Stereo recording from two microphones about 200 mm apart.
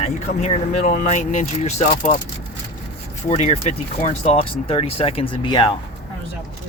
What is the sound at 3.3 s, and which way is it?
Speech, 35° left (ahead or behind).